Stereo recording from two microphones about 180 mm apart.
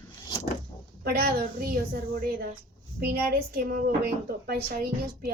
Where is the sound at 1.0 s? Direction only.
60° right (ahead or behind).